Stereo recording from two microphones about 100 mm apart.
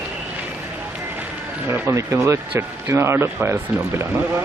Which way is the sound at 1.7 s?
25° right (ahead or behind).